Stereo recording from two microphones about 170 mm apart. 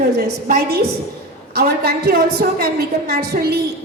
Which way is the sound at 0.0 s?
65° right (ahead or behind).